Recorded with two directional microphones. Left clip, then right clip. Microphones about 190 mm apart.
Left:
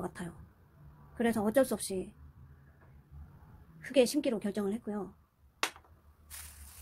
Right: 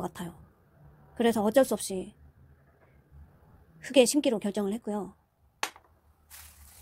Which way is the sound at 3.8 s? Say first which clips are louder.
Right 5 dB; 35° right (ahead or behind).